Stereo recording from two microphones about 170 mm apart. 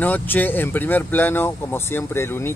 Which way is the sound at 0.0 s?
10° left (ahead or behind).